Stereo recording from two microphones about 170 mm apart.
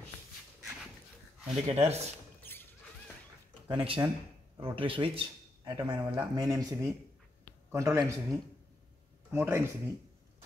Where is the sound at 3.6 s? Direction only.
30° right (ahead or behind).